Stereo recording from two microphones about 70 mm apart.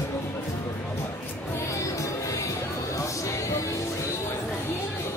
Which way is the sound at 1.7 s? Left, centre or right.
Left.